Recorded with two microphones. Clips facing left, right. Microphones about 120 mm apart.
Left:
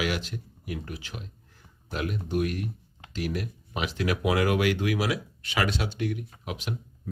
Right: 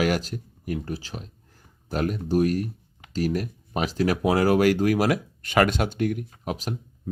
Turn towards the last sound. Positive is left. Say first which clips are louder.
# right 4 dB
turn(degrees=-40)  # may be behind; listen again after turning